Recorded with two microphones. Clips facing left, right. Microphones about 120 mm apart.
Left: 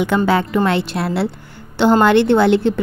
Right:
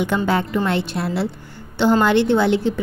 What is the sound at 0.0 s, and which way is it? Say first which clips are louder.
A woman's voice: left 4 dB; 90° left.